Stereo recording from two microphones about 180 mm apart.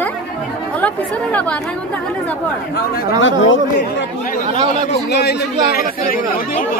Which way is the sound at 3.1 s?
90° left.